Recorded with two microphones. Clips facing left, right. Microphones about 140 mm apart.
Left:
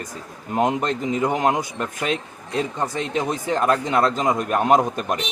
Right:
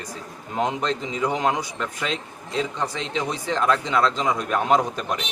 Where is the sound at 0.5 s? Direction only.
50° left (ahead or behind).